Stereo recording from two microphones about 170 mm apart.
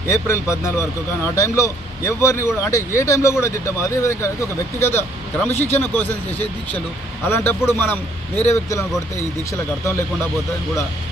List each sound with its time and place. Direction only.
0.0 s speech: 15° left (ahead or behind)